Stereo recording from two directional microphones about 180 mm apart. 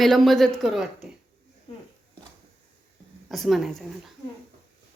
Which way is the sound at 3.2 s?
Centre (ahead or behind).